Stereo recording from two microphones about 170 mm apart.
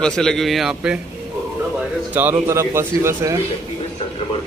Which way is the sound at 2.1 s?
10° right (ahead or behind).